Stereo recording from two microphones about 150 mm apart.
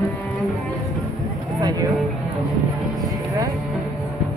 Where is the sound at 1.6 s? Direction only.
25° right (ahead or behind).